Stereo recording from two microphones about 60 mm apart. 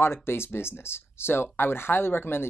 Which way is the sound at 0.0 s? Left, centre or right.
Left.